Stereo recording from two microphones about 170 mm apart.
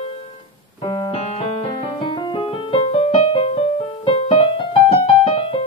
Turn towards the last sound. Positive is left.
turn(degrees=35)  # may be behind; listen again after turning